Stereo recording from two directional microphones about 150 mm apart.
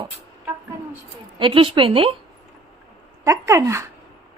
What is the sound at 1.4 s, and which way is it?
Speech, 35° right (ahead or behind).